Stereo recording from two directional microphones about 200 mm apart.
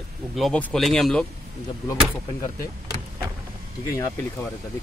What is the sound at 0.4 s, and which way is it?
Speech, 5° left (ahead or behind).